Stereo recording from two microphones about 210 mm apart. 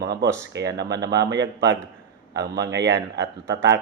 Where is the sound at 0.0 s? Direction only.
50° right (ahead or behind).